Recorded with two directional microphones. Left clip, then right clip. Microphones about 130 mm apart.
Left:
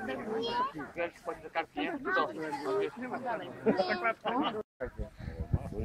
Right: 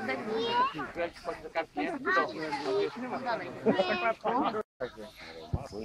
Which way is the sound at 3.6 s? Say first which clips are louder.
Right 2 dB; 50° right (ahead or behind).